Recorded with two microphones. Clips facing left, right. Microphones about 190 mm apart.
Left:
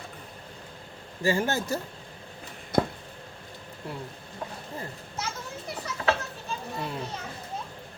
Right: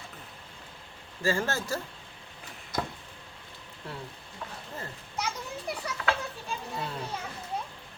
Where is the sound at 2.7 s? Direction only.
60° left (ahead or behind).